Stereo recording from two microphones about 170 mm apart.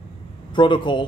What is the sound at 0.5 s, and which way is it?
Speech, 30° left (ahead or behind).